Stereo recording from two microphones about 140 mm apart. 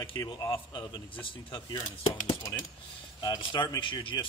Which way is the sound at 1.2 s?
30° left (ahead or behind).